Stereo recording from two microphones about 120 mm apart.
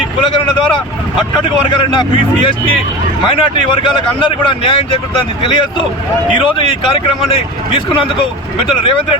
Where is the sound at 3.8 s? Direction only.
45° left (ahead or behind).